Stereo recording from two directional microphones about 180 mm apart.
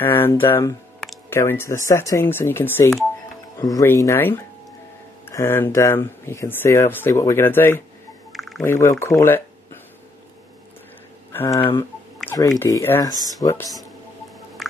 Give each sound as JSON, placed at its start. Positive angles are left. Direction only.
{"t": 0.0, "sound": "speech", "side_deg": 10}
{"t": 8.3, "sound": "typing", "side_deg": 0}
{"t": 8.6, "sound": "speech", "side_deg": 15}
{"t": 11.3, "sound": "speech", "side_deg": 20}
{"t": 14.6, "sound": "a sound", "side_deg": 0}